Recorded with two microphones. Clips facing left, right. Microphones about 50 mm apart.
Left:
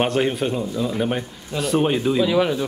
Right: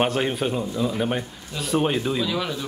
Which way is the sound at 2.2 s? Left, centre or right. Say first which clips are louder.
Left 7 dB; left.